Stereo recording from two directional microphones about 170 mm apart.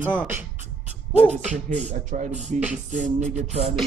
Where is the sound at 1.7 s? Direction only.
45° right (ahead or behind).